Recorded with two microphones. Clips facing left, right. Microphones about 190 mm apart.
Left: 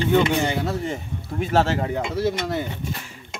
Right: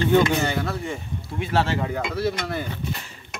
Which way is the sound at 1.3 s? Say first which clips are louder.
Left 3 dB; 45° left (ahead or behind).